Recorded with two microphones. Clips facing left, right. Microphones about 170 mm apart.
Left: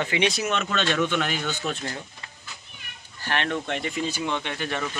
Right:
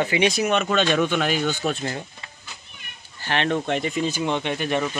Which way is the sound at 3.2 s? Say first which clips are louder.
Right 4 dB; 20° right (ahead or behind).